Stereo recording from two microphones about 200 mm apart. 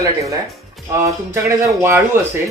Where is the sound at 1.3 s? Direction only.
10° right (ahead or behind).